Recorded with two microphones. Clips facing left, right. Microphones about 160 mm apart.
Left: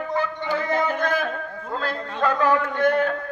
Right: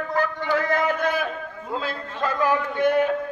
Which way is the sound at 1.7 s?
5° right (ahead or behind).